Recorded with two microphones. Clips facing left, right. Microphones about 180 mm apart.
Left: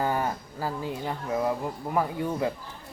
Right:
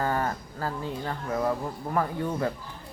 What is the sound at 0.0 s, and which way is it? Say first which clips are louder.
Speech: even; 15° left (ahead or behind).